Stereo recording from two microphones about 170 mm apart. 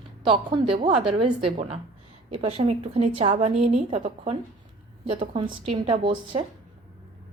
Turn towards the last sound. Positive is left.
turn(degrees=-30)  # may be behind; listen again after turning